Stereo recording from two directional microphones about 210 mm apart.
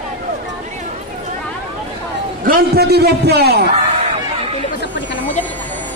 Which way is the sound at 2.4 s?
45° right (ahead or behind).